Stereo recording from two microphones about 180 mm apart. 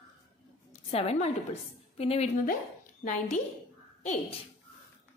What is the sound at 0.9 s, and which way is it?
A woman's voice, 35° left (ahead or behind).